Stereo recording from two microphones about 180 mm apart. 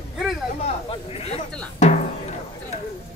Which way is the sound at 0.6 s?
35° left (ahead or behind).